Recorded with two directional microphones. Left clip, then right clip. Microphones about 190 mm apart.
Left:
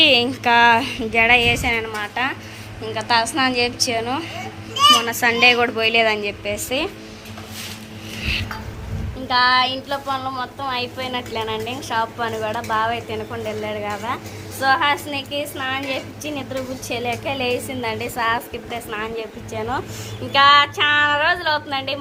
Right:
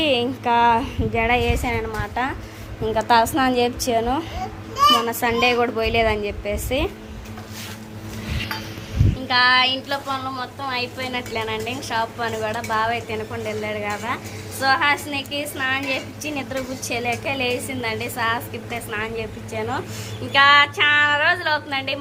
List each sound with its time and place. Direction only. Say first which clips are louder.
0.0 s a woman's voice: left 5 dB; centre (ahead or behind)
2.8 s a woman's voice: right 2 dB; 45° right (ahead or behind)
4.7 s children playing: left 2 dB; 20° right (ahead or behind)
5.2 s a woman's voice: left 4 dB; 5° right (ahead or behind)
9.2 s a woman's voice: even; 5° left (ahead or behind)
10.1 s a woman's voice: left 2 dB; 25° left (ahead or behind)